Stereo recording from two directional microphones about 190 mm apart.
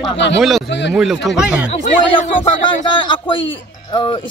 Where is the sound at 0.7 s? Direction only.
70° left (ahead or behind).